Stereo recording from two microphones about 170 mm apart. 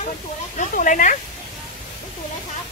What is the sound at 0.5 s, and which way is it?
Speech, 50° left (ahead or behind).